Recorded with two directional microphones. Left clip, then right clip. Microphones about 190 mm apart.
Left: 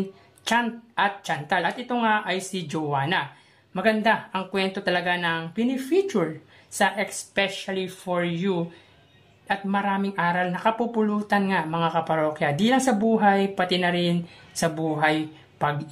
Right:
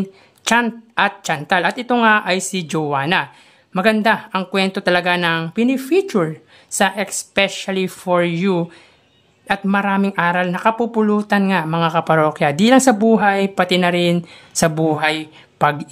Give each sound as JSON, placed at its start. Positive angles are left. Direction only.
{"t": 0.4, "sound": "speech", "side_deg": -35}